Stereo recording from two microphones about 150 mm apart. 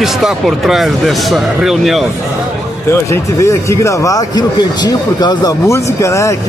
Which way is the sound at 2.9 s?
20° left (ahead or behind).